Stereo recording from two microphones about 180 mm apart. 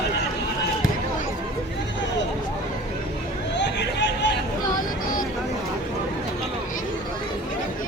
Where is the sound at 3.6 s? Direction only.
75° left (ahead or behind).